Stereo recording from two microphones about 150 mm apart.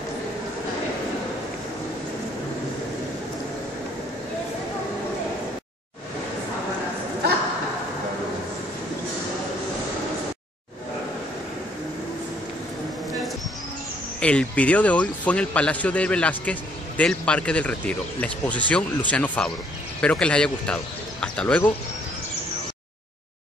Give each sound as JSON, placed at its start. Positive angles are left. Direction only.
{"t": 14.2, "sound": "a man's voice", "side_deg": 10}